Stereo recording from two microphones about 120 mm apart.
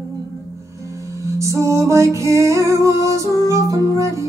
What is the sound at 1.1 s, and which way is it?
Music, 25° right (ahead or behind).